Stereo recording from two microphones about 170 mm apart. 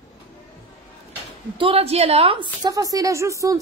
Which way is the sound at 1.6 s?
35° right (ahead or behind).